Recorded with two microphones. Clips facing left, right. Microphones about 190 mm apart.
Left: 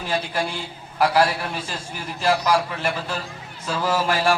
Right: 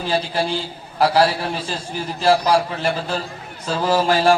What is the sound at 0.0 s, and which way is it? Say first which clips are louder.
A man's voice: right 4 dB; 30° right (ahead or behind).